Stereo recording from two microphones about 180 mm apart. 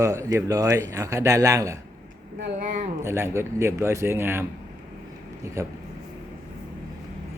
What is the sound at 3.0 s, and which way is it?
A man's voice, 15° right (ahead or behind).